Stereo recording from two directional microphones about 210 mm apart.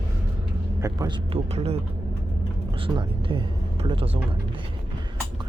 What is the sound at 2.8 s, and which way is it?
Speech, 25° right (ahead or behind).